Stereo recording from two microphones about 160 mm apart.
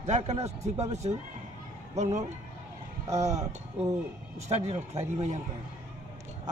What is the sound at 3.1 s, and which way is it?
Speech, 45° right (ahead or behind).